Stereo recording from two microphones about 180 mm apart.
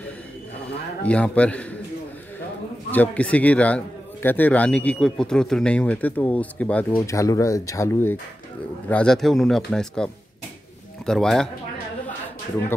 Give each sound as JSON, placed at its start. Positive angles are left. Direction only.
{"t": 1.0, "sound": "speech", "side_deg": 5}
{"t": 2.9, "sound": "speech", "side_deg": 10}